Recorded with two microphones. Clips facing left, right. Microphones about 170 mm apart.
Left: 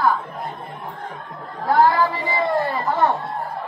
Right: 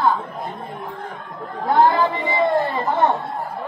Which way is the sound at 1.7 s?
20° right (ahead or behind).